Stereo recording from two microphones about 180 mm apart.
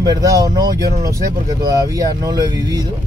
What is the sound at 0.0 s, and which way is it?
Speech, 20° right (ahead or behind).